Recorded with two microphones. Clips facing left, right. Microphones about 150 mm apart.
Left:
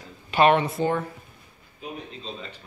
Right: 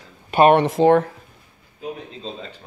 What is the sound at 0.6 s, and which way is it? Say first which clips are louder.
Speech: right 10 dB; 90° right.